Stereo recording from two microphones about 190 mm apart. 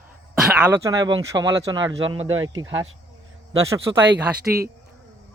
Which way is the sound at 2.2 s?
90° right.